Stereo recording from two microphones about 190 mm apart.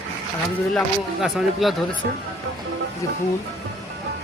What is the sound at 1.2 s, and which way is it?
Speech, centre (ahead or behind).